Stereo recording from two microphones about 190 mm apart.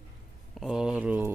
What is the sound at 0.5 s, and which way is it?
Speech, 5° right (ahead or behind).